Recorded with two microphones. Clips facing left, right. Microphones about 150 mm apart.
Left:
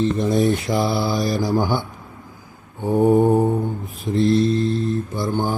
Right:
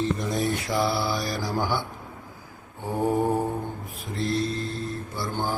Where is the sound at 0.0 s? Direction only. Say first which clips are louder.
Left 8 dB; 25° left (ahead or behind).